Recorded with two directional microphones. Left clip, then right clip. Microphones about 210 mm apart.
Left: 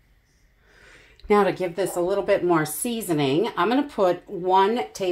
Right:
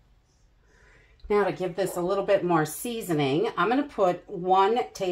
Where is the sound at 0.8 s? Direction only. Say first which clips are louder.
Left 7 dB; 55° left (ahead or behind).